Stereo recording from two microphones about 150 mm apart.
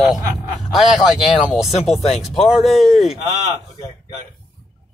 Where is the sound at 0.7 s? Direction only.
Centre (ahead or behind).